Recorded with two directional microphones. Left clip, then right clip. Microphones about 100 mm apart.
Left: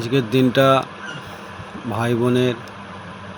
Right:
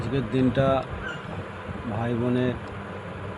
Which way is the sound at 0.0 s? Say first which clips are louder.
Left 7 dB; 55° left (ahead or behind).